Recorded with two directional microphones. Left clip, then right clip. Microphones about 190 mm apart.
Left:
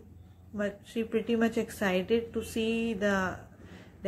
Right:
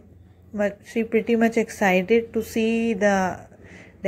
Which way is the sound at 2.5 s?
90° right.